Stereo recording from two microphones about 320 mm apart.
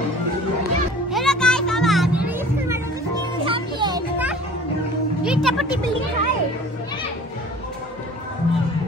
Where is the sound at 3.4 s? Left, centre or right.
Centre.